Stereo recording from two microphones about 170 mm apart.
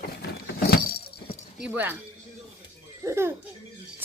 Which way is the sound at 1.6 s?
10° right (ahead or behind).